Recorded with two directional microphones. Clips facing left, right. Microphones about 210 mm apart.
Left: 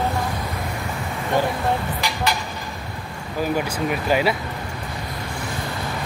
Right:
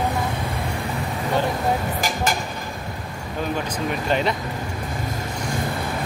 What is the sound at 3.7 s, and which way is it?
Speech, 5° left (ahead or behind).